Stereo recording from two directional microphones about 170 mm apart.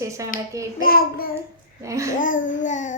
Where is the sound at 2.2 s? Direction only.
50° left (ahead or behind).